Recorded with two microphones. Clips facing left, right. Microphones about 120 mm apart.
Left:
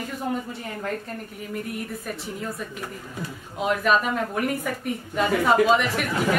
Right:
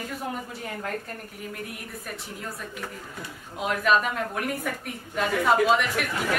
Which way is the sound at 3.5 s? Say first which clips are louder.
Left 2 dB; centre (ahead or behind).